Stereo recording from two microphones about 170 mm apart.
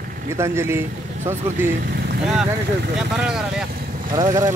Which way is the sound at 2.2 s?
5° right (ahead or behind).